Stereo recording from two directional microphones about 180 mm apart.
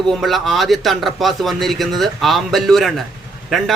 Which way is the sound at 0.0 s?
Centre (ahead or behind).